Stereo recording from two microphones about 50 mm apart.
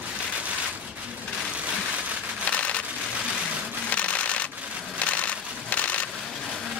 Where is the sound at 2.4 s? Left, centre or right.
Left.